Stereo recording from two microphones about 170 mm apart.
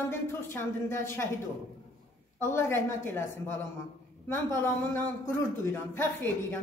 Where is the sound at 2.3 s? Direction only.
15° left (ahead or behind).